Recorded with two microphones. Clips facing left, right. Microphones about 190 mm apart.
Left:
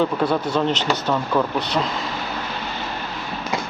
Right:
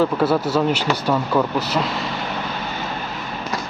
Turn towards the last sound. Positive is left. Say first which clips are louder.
# right 1 dB
turn(degrees=-5)  # may be behind; listen again after turning